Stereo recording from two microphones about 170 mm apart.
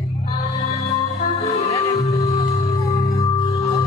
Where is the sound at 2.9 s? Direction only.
20° left (ahead or behind).